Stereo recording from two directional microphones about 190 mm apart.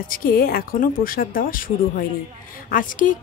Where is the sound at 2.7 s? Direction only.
45° left (ahead or behind).